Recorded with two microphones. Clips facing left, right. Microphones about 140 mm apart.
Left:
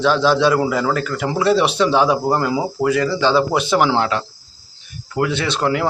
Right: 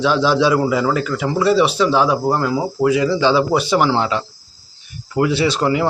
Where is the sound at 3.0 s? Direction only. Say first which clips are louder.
Left 1 dB; 15° right (ahead or behind).